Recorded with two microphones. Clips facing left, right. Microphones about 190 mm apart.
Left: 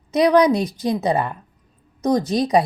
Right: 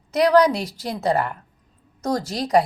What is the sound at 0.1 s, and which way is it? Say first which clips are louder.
A woman's voice: left 2 dB; 20° left (ahead or behind).